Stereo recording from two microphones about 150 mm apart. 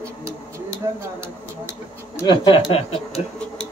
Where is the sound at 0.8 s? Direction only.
20° right (ahead or behind).